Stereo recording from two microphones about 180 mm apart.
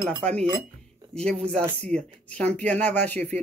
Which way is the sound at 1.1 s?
5° left (ahead or behind).